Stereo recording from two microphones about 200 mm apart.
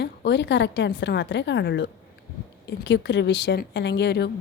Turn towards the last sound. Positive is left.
turn(degrees=55)  # may be behind; listen again after turning